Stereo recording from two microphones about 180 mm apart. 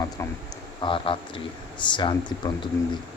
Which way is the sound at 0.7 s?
30° left (ahead or behind).